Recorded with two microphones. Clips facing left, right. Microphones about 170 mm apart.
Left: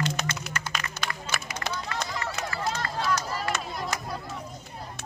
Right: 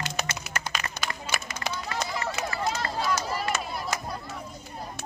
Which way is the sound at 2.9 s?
10° right (ahead or behind).